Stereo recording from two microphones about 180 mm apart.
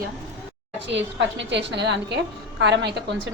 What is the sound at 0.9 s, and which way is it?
A woman's voice, 90° right.